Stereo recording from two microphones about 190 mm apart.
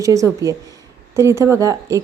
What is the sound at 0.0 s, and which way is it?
A woman's voice, 15° right (ahead or behind).